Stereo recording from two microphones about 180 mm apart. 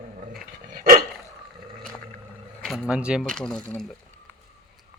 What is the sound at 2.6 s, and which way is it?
Speech, centre (ahead or behind).